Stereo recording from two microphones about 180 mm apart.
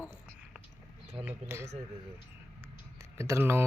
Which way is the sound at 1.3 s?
15° right (ahead or behind).